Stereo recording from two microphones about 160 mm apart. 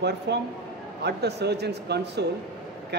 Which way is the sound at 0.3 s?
90° right.